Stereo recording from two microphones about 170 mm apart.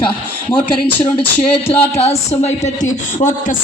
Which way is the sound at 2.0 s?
40° left (ahead or behind).